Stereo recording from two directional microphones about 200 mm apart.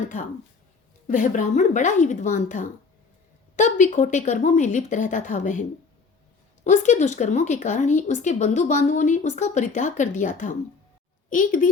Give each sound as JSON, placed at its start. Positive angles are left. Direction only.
{"t": 1.0, "sound": "a woman's voice", "side_deg": 40}
{"t": 6.7, "sound": "a woman's voice", "side_deg": 35}